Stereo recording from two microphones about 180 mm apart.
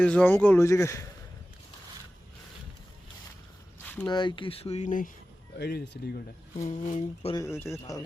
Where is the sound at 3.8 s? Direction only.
10° left (ahead or behind).